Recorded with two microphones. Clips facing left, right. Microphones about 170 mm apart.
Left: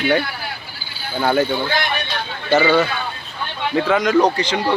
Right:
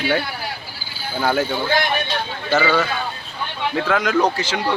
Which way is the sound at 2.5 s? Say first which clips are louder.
Left 3 dB; 20° left (ahead or behind).